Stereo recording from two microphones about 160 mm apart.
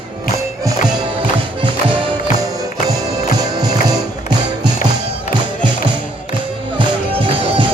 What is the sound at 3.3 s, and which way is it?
Music, 25° right (ahead or behind).